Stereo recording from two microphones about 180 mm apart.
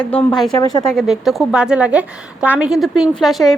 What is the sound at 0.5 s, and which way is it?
Speech, 20° left (ahead or behind).